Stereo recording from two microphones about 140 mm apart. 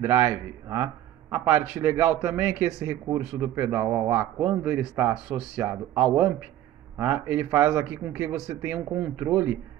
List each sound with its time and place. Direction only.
0.0 s a man's voice: 15° right (ahead or behind)